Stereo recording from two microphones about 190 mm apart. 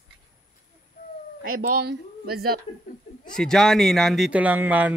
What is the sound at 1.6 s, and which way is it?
Speech, 55° right (ahead or behind).